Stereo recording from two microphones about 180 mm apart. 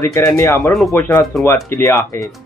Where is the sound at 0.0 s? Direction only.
15° left (ahead or behind).